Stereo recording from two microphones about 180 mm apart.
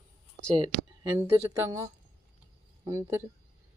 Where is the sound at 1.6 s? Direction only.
15° right (ahead or behind).